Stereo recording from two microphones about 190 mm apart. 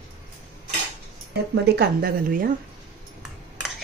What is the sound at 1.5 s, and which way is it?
Speech, 60° right (ahead or behind).